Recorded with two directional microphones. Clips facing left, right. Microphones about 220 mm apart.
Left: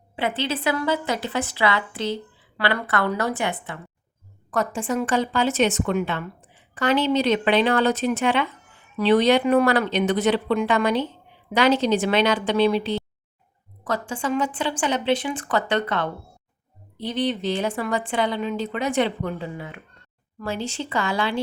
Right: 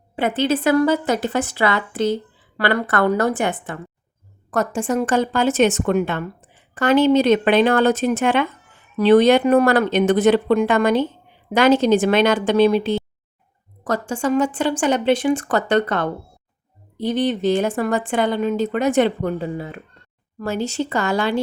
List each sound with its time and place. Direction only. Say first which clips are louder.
0.2 s a woman's voice: right 6 dB; 45° right (ahead or behind)